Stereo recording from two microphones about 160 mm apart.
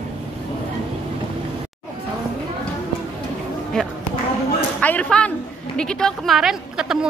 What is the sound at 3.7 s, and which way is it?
A woman's voice, 5° left (ahead or behind).